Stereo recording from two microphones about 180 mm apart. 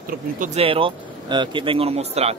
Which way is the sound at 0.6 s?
30° right (ahead or behind).